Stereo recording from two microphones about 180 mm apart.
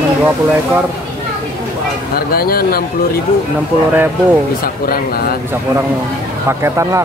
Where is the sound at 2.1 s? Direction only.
55° left (ahead or behind).